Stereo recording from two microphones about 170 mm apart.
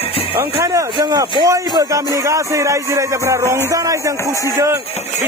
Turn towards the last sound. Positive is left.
turn(degrees=-20)  # may be behind; listen again after turning